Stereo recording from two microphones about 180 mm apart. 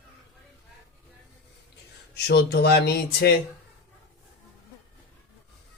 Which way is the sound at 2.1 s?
65° left (ahead or behind).